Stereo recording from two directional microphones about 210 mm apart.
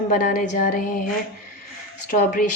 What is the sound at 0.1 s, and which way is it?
Speech, 40° left (ahead or behind).